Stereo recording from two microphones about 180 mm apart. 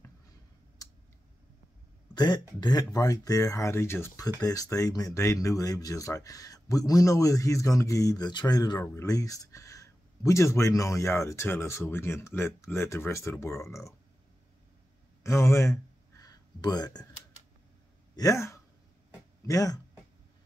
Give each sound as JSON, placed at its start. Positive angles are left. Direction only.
{"t": 2.1, "sound": "speech", "side_deg": 25}
{"t": 15.2, "sound": "a sound", "side_deg": 15}
{"t": 18.1, "sound": "speech", "side_deg": 20}